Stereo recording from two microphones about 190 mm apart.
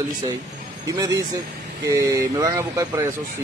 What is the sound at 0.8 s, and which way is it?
Speech, 15° right (ahead or behind).